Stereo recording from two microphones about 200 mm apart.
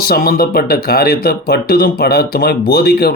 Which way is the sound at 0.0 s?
50° left (ahead or behind).